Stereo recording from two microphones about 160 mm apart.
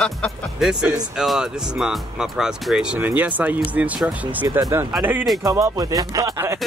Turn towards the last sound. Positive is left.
turn(degrees=-15)  # may be behind; listen again after turning